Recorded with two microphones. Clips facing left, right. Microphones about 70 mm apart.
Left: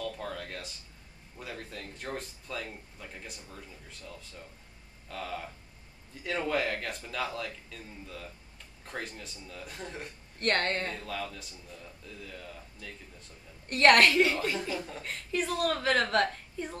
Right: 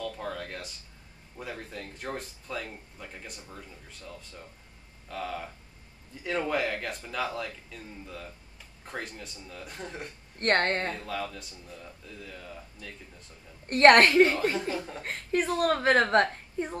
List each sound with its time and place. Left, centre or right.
0.0 s a sound: centre
1.4 s speech: centre
5.1 s speech: centre
8.8 s speech: centre
10.4 s a woman's voice: right
11.1 s speech: centre
13.7 s a woman's voice: right